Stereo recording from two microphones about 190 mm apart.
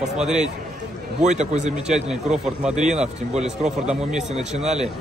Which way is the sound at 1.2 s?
40° right (ahead or behind).